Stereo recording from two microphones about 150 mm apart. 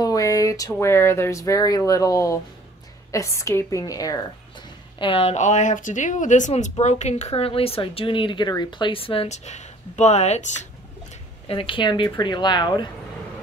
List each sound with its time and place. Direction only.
0.0 s a woman's voice: 25° left (ahead or behind)
4.9 s speech: 35° left (ahead or behind)
11.4 s speech: 35° left (ahead or behind)